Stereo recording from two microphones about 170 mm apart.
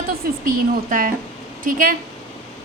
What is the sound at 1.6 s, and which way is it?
Speech, 55° right (ahead or behind).